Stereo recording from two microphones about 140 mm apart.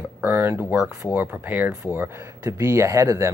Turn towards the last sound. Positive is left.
turn(degrees=-20)  # may be behind; listen again after turning